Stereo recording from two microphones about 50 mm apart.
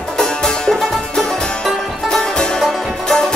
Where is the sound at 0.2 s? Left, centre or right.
Centre.